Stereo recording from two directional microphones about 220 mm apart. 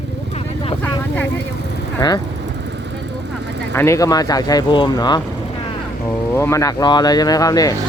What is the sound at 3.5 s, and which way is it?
Vehicle, 50° right (ahead or behind).